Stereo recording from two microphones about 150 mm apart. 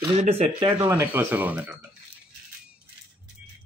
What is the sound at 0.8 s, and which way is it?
Speech, 25° right (ahead or behind).